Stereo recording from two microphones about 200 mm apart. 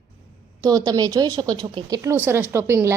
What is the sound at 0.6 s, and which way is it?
A woman's voice, 20° right (ahead or behind).